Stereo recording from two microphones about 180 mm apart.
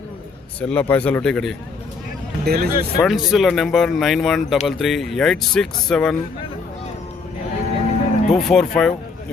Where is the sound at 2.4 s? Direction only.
60° right (ahead or behind).